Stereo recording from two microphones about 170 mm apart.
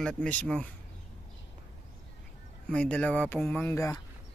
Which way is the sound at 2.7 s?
5° left (ahead or behind).